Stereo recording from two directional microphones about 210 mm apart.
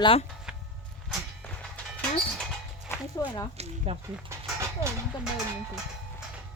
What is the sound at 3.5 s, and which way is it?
Speech, 30° right (ahead or behind).